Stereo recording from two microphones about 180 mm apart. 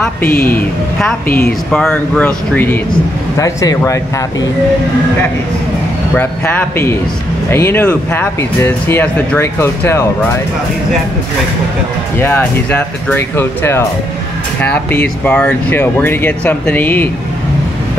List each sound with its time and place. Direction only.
0.3 s a man's voice: 55° left (ahead or behind)
0.6 s speech: 5° left (ahead or behind)
6.1 s speech: 10° left (ahead or behind)
12.2 s speech: 10° left (ahead or behind)